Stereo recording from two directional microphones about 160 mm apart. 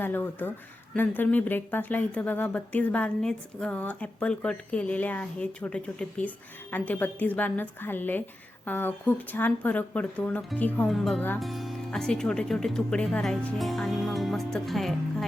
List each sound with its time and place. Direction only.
0.0 s speech: 10° left (ahead or behind)